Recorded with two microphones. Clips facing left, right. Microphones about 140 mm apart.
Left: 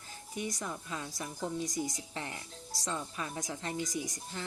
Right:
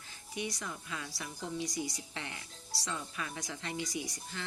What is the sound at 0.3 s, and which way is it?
Speech, 45° left (ahead or behind).